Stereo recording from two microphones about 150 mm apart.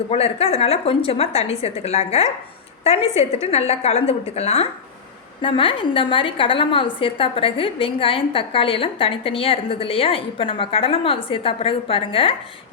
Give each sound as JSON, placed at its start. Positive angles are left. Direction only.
{"t": 0.1, "sound": "a woman's voice", "side_deg": 40}